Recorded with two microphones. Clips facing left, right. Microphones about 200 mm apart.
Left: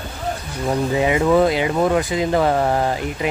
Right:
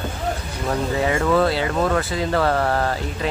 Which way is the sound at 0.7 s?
15° left (ahead or behind).